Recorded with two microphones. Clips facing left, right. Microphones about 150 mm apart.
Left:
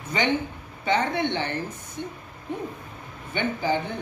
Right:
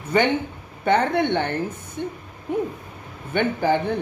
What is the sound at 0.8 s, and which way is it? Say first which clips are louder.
Speech: right 5 dB; 55° right (ahead or behind).